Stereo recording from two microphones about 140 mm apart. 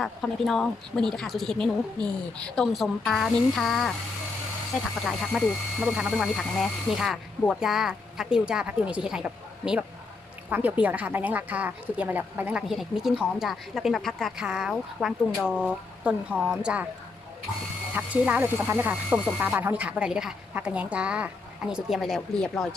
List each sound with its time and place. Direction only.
0.0 s a woman's voice: centre (ahead or behind)
17.9 s a woman's voice: 10° right (ahead or behind)